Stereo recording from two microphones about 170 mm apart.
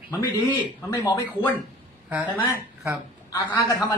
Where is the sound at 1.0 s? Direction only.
15° left (ahead or behind).